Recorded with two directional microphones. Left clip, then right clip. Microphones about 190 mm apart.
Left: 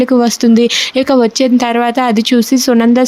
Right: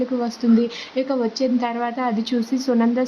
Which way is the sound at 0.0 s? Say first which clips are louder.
Left 12 dB; 40° left (ahead or behind).